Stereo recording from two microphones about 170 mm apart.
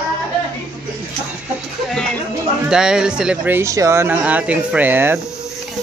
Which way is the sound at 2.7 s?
5° right (ahead or behind).